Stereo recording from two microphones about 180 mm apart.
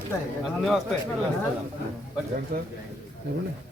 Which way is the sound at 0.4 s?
Centre (ahead or behind).